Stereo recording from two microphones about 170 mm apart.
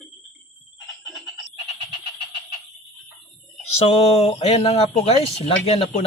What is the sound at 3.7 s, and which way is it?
Mantra, 40° left (ahead or behind).